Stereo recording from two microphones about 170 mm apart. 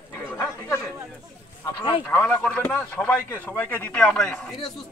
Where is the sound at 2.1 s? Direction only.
10° left (ahead or behind).